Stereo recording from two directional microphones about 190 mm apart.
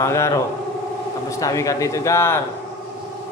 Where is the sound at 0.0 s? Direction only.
15° left (ahead or behind).